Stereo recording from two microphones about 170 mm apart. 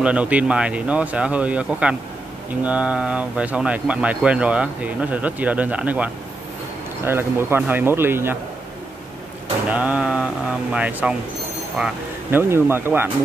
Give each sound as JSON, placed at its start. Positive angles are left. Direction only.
{"t": 0.0, "sound": "speech", "side_deg": -5}
{"t": 9.7, "sound": "speech", "side_deg": -10}